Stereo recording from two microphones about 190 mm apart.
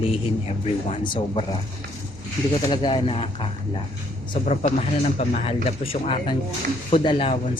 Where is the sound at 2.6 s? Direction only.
25° left (ahead or behind).